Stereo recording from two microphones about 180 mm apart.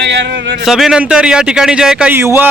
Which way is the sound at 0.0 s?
75° right (ahead or behind).